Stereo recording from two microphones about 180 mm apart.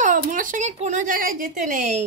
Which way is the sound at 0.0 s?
45° right (ahead or behind).